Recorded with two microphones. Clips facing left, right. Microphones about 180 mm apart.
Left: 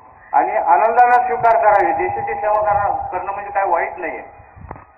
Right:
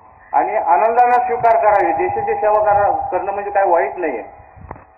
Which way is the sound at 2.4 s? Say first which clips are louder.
Right 3 dB; 45° right (ahead or behind).